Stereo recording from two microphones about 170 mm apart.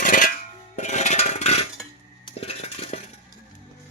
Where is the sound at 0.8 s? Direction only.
45° left (ahead or behind).